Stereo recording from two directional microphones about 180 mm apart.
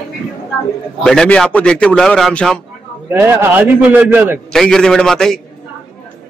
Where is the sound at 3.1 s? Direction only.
10° right (ahead or behind).